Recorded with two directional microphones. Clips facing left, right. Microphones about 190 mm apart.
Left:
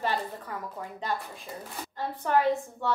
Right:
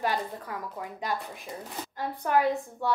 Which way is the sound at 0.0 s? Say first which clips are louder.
Right 1 dB; 10° right (ahead or behind).